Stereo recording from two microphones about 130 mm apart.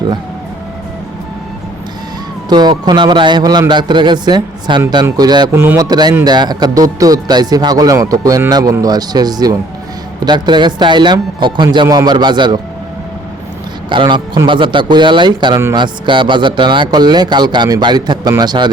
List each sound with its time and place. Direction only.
2.5 s speech: 35° right (ahead or behind)
5.5 s speech: 20° right (ahead or behind)
13.9 s speech: 40° right (ahead or behind)